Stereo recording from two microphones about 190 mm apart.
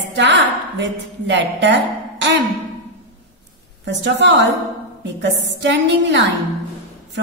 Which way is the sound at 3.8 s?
70° right (ahead or behind).